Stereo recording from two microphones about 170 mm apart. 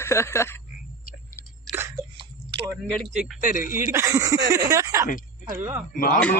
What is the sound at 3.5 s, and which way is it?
Speech, 50° left (ahead or behind).